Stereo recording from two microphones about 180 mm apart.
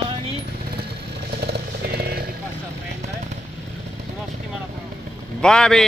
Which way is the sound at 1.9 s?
60° right (ahead or behind).